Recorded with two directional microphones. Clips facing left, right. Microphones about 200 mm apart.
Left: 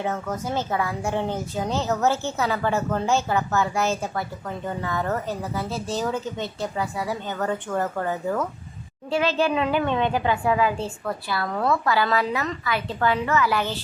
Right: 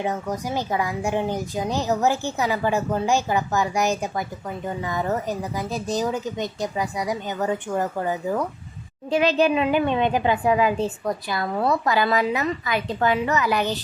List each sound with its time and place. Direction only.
0.0 s speech: 15° right (ahead or behind)